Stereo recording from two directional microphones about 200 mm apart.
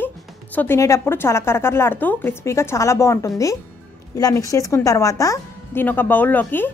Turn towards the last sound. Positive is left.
turn(degrees=10)  # may be behind; listen again after turning